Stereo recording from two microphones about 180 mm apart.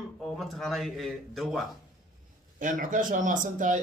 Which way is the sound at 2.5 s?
45° right (ahead or behind).